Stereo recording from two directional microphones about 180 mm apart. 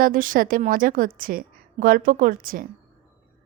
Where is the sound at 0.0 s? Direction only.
50° right (ahead or behind).